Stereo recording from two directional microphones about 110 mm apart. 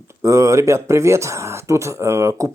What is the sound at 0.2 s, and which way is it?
Speech, 30° right (ahead or behind).